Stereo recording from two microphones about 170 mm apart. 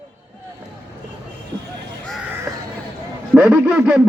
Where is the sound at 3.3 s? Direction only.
5° right (ahead or behind).